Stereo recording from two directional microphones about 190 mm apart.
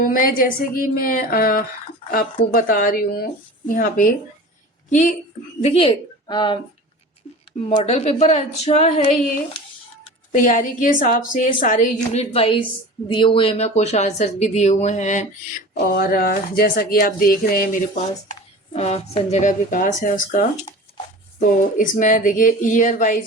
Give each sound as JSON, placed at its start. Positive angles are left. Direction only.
{"t": 0.0, "sound": "speech", "side_deg": 45}
{"t": 5.6, "sound": "speech", "side_deg": 30}
{"t": 7.8, "sound": "speech", "side_deg": 35}
{"t": 10.3, "sound": "speech", "side_deg": 45}
{"t": 12.1, "sound": "speech", "side_deg": 30}
{"t": 15.8, "sound": "speech", "side_deg": 50}
{"t": 18.7, "sound": "speech", "side_deg": 35}